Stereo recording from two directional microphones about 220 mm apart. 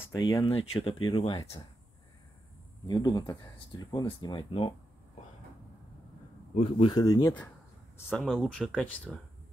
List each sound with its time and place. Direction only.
0.0 s speech: 15° left (ahead or behind)
2.9 s speech: 15° left (ahead or behind)
6.5 s speech: 30° left (ahead or behind); by 7.5 s 15° left (ahead or behind)
8.1 s speech: 5° left (ahead or behind)